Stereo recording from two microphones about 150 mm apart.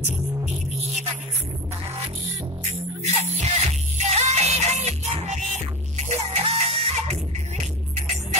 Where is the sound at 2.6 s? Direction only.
50° right (ahead or behind).